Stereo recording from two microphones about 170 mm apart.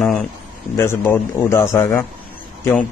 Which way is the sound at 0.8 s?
15° left (ahead or behind).